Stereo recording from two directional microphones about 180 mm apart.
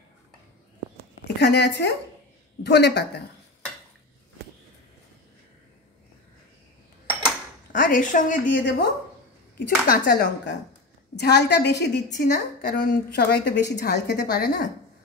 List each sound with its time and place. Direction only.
1.2 s a woman's voice: 65° left (ahead or behind)
7.7 s a woman's voice: 50° left (ahead or behind)
8.6 s speech: 70° left (ahead or behind)
9.8 s a woman's voice: 60° left (ahead or behind)
12.3 s a woman's voice: 50° left (ahead or behind)